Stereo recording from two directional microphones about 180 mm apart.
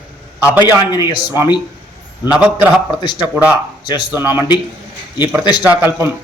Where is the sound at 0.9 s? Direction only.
20° left (ahead or behind).